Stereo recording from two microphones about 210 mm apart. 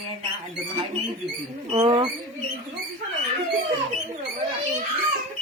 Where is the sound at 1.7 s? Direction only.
25° right (ahead or behind).